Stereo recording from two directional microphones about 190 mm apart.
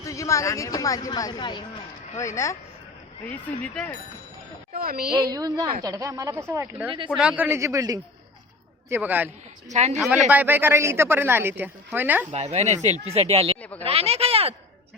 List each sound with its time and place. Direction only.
0.0 s speech: 15° left (ahead or behind)
3.6 s speech: 5° left (ahead or behind)
4.8 s a woman's voice: 50° right (ahead or behind)
5.3 s speech: 20° right (ahead or behind)
9.7 s speech: 35° right (ahead or behind)
10.3 s speech: 10° right (ahead or behind)
12.3 s speech: 35° right (ahead or behind)
13.6 s speech: 10° left (ahead or behind)
13.8 s speech: 30° right (ahead or behind)